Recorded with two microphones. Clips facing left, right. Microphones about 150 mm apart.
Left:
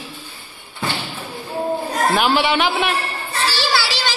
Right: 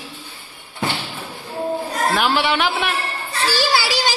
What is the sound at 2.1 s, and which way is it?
Speech, 5° left (ahead or behind).